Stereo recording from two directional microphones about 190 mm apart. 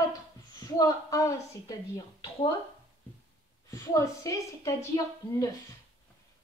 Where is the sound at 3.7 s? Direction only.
15° left (ahead or behind).